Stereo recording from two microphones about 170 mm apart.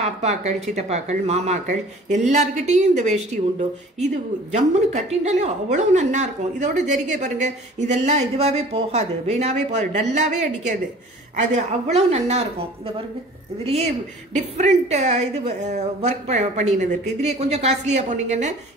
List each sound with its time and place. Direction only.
0.0 s a woman's voice: 40° right (ahead or behind)
14.3 s speech: 40° right (ahead or behind)